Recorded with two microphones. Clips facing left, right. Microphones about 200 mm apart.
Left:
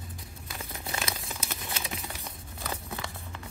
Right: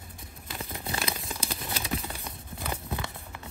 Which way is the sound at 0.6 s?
30° right (ahead or behind).